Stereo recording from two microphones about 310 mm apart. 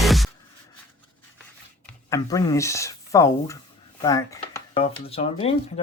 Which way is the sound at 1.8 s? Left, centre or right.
Centre.